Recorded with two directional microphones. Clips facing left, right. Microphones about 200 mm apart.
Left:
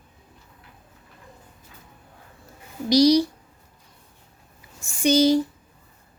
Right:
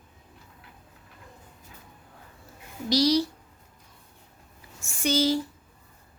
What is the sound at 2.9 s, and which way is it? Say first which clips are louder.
Speech: left 6 dB; 15° left (ahead or behind).